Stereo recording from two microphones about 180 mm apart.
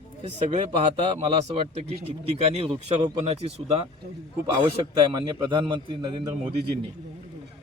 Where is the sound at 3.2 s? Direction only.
35° right (ahead or behind).